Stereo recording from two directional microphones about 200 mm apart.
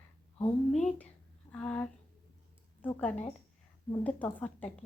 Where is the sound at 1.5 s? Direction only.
5° left (ahead or behind).